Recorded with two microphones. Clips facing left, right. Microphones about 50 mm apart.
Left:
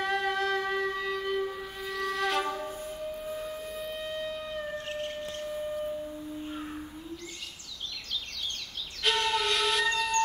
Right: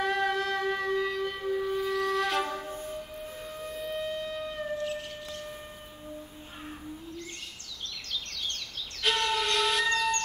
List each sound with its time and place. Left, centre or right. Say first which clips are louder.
0.0 s wind instrument: right 1 dB; centre
3.4 s wind instrument: even; centre
4.8 s siren: left 1 dB; left
9.0 s train: even; centre